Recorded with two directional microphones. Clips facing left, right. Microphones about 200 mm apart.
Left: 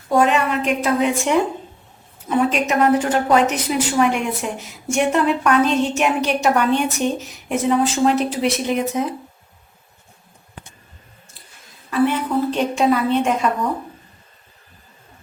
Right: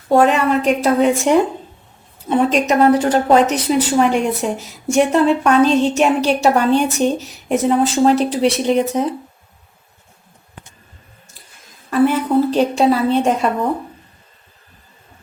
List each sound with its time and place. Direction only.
0.1 s a woman's voice: 35° right (ahead or behind)
11.9 s a woman's voice: 40° right (ahead or behind)